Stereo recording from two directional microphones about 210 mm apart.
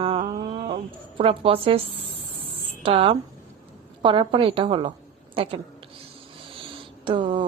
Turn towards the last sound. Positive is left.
turn(degrees=-25)  # may be behind; listen again after turning